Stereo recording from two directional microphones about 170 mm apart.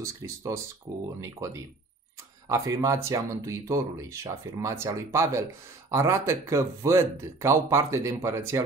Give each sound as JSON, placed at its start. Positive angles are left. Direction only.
{"t": 0.0, "sound": "speech", "side_deg": -15}
{"t": 2.5, "sound": "speech", "side_deg": -20}